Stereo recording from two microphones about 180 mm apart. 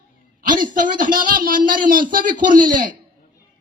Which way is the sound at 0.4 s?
45° right (ahead or behind).